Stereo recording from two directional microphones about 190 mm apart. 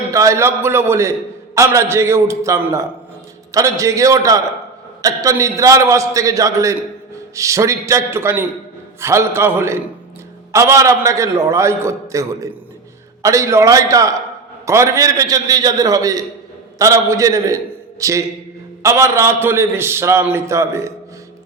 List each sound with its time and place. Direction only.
0.1 s a man's voice: 15° right (ahead or behind)